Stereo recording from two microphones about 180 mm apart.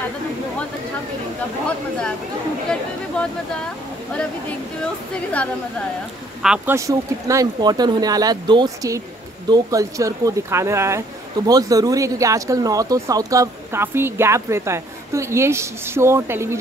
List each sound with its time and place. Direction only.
2.7 s speech: 5° left (ahead or behind)
5.1 s a woman's voice: 5° left (ahead or behind)
6.4 s speech: 5° right (ahead or behind)